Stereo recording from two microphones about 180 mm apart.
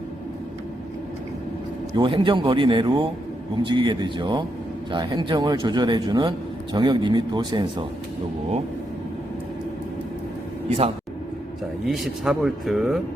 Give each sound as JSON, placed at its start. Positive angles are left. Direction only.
{"t": 2.0, "sound": "speech", "side_deg": -30}
{"t": 11.9, "sound": "speech", "side_deg": 0}